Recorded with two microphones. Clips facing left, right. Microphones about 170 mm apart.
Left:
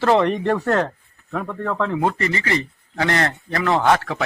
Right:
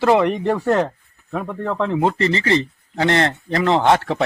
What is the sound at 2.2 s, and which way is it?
Speech, 30° right (ahead or behind).